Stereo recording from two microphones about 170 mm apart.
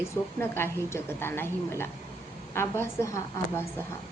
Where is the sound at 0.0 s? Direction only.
15° left (ahead or behind).